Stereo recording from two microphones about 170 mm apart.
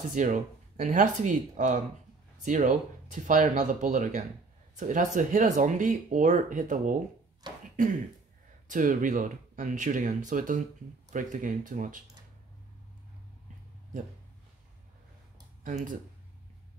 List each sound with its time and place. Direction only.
0.1 s speech: 50° right (ahead or behind)
15.6 s speech: 50° right (ahead or behind)